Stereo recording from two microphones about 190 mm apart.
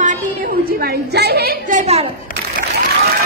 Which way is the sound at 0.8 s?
60° right (ahead or behind).